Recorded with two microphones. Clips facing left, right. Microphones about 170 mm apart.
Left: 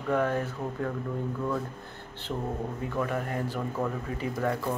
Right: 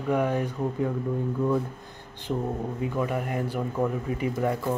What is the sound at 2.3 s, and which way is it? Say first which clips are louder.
Speech: right 4 dB; 10° right (ahead or behind).